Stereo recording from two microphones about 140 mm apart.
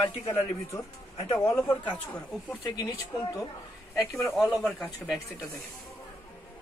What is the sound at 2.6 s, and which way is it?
Speech, 30° left (ahead or behind).